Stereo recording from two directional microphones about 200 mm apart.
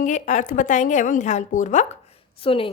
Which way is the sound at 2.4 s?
25° left (ahead or behind).